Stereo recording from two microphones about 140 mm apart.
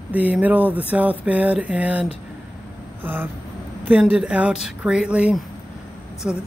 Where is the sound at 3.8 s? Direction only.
10° right (ahead or behind).